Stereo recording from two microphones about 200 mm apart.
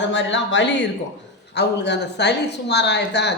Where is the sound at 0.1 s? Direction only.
65° left (ahead or behind).